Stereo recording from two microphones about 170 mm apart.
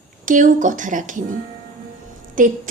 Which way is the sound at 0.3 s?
50° right (ahead or behind).